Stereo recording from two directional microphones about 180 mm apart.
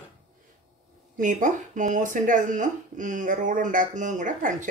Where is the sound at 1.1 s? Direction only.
45° right (ahead or behind).